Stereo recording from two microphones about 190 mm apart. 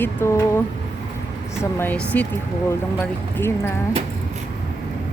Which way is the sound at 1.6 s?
10° left (ahead or behind).